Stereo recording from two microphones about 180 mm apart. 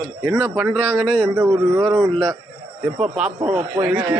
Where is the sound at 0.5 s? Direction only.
Centre (ahead or behind).